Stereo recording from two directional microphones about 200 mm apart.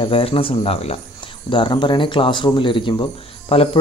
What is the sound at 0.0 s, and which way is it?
A man's voice, 30° left (ahead or behind).